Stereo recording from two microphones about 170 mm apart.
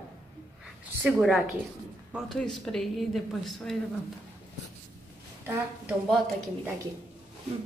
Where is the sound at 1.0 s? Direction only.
5° right (ahead or behind).